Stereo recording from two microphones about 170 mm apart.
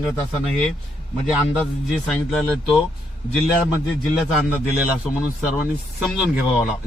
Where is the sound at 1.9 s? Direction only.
Centre (ahead or behind).